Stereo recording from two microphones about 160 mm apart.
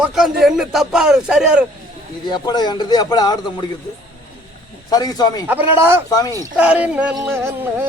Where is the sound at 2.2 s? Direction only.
25° left (ahead or behind).